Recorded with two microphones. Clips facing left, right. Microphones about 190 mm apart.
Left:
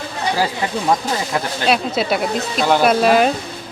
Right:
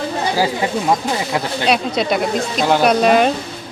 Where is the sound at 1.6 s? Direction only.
5° left (ahead or behind).